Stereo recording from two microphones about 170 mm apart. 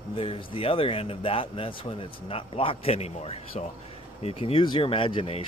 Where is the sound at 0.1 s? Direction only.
30° left (ahead or behind).